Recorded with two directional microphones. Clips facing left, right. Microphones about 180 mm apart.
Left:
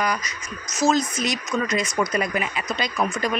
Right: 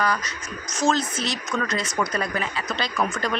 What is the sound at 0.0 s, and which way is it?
Speech, 15° left (ahead or behind).